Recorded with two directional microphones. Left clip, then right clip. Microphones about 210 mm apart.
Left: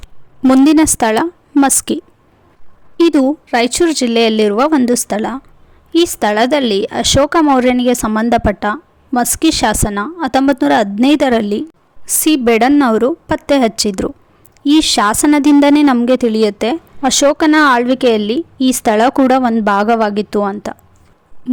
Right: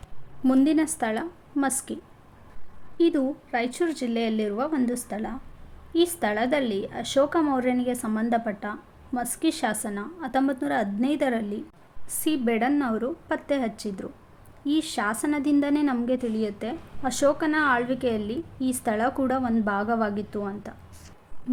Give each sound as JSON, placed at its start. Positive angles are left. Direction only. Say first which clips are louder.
{"t": 0.4, "sound": "a woman's voice", "louder": "left 13 dB", "side_deg": 50}
{"t": 3.0, "sound": "a woman's voice", "louder": "left 12 dB", "side_deg": 50}